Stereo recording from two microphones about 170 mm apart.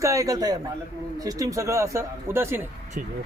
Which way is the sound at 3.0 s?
55° right (ahead or behind).